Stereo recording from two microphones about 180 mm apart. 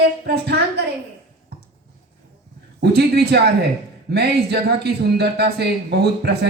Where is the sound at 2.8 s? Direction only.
65° right (ahead or behind).